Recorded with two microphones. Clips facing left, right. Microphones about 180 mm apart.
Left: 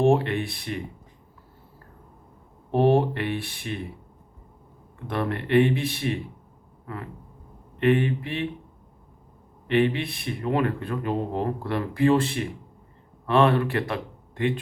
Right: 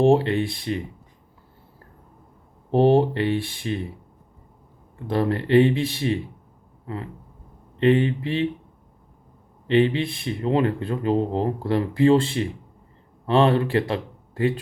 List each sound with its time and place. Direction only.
0.0 s speech: 30° right (ahead or behind)
2.7 s speech: 30° right (ahead or behind)
5.0 s speech: 30° right (ahead or behind)
6.8 s a sound: 25° right (ahead or behind)
7.8 s speech: 30° right (ahead or behind)
9.6 s speech: 30° right (ahead or behind)